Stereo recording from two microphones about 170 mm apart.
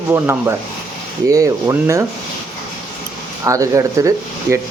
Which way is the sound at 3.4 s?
20° right (ahead or behind).